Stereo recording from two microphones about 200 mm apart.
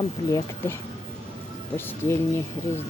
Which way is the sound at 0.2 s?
15° left (ahead or behind).